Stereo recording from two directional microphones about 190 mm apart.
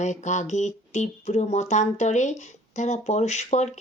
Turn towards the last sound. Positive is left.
turn(degrees=35)  # may be behind; listen again after turning